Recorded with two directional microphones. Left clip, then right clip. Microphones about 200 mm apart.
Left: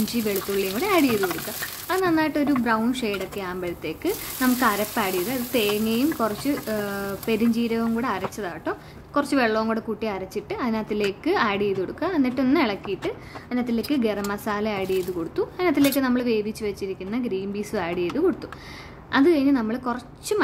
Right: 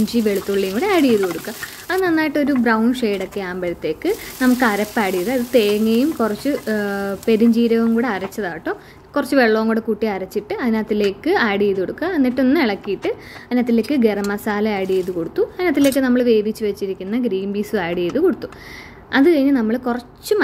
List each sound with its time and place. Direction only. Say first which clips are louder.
0.1 s speech: right 7 dB; 10° right (ahead or behind)